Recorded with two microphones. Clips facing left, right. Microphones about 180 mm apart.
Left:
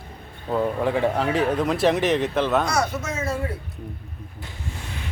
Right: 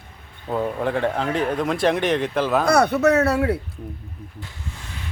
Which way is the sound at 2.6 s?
60° right (ahead or behind).